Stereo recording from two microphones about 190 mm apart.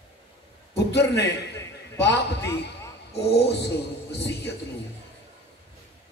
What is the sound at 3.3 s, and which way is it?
Speech, 60° left (ahead or behind).